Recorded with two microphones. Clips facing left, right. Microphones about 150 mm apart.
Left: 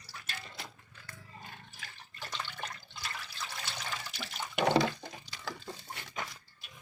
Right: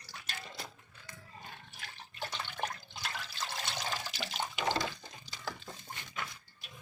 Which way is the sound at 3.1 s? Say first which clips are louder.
Right 2 dB; 90° right.